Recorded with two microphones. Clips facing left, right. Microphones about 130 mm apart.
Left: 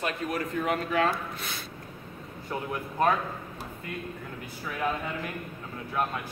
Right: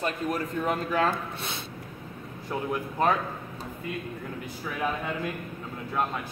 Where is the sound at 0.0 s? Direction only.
35° right (ahead or behind).